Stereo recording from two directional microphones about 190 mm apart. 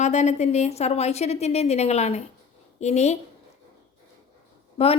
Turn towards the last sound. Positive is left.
turn(degrees=30)  # may be behind; listen again after turning